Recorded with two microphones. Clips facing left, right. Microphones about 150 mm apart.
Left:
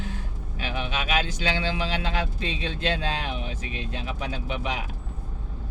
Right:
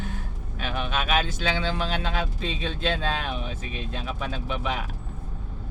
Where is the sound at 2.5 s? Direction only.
55° right (ahead or behind).